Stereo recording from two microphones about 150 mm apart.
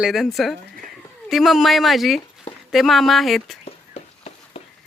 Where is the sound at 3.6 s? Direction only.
45° left (ahead or behind).